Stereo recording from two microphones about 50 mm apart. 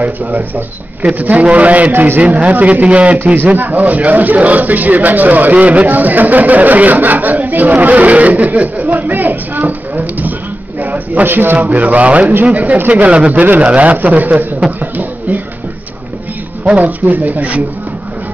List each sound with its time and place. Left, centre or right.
0.0 s a man's voice: right
10.8 s a sound: right
11.5 s speech: right
12.9 s speech: right
16.6 s speech: right